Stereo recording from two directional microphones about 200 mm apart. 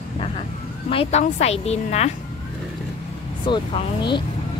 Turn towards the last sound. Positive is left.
turn(degrees=25)  # may be behind; listen again after turning